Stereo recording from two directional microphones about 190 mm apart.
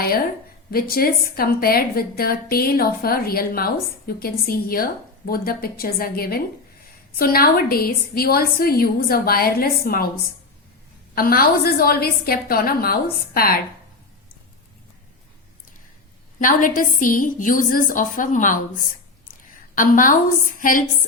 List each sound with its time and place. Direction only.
0.7 s a woman's voice: 50° left (ahead or behind)
11.1 s a woman's voice: 50° left (ahead or behind)
16.4 s a woman's voice: 45° left (ahead or behind)